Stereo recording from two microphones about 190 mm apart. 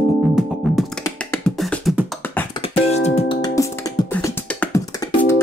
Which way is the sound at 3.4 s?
15° left (ahead or behind).